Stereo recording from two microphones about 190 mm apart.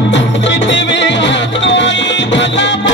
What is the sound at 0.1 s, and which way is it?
Music, 70° left (ahead or behind).